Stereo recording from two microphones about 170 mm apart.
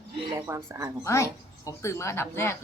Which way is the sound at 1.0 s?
20° left (ahead or behind).